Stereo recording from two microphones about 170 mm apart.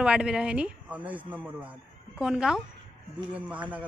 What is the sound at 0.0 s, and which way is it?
A man's voice, 5° right (ahead or behind).